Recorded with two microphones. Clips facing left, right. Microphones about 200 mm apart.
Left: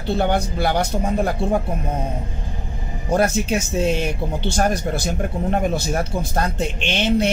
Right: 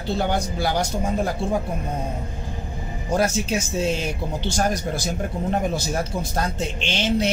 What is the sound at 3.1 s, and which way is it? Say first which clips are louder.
Speech: left 3 dB; 55° left (ahead or behind).